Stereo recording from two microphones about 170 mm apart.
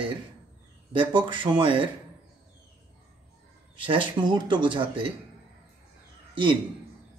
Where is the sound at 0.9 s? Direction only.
30° right (ahead or behind).